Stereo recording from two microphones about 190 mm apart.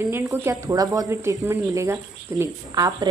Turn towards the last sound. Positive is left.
turn(degrees=-20)  # may be behind; listen again after turning